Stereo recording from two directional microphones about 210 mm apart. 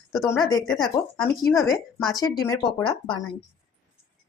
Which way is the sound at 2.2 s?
20° left (ahead or behind).